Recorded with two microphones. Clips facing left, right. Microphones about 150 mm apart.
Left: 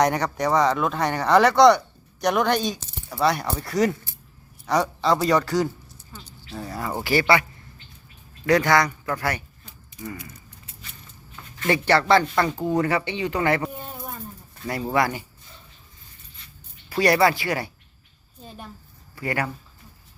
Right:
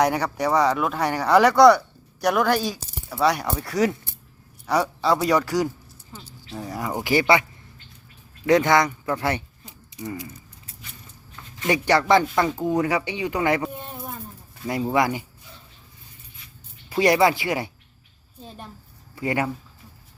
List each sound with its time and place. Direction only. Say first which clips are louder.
0.0 s speech: even; 10° right (ahead or behind)
8.4 s speech: right 1 dB; 20° right (ahead or behind)
11.6 s speech: even; 15° right (ahead or behind)
13.6 s a sound: right 1 dB; centre (ahead or behind)
14.9 s speech: even; 15° right (ahead or behind)
16.9 s speech: right 1 dB; 15° right (ahead or behind)
18.4 s speech: even; centre (ahead or behind)
19.1 s speech: right 2 dB; 20° right (ahead or behind)